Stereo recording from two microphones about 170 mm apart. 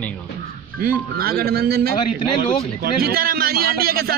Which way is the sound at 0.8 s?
60° right (ahead or behind).